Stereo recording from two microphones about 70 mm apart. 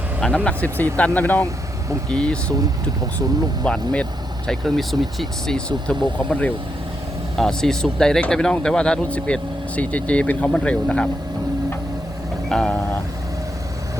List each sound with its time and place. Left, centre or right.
0.3 s speech: left
3.6 s speech: centre
4.4 s speech: centre
5.5 s speech: centre
7.3 s speech: centre
12.5 s speech: centre